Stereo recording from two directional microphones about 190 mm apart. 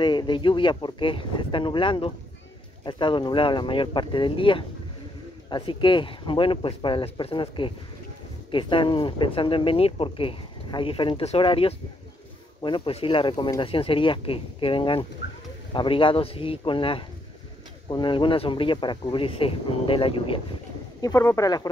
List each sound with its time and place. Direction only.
0.0 s speech: 25° left (ahead or behind)
21.0 s speech: 15° left (ahead or behind)